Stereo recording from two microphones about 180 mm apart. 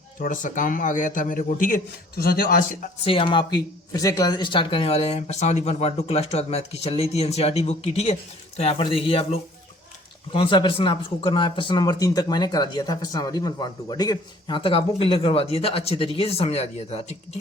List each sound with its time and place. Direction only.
0.2 s a man's voice: 45° left (ahead or behind)
3.0 s speech: 30° left (ahead or behind)